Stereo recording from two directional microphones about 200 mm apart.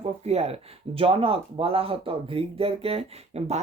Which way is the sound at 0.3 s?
30° right (ahead or behind).